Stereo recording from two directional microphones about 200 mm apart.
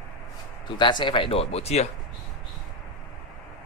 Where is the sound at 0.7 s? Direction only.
25° left (ahead or behind).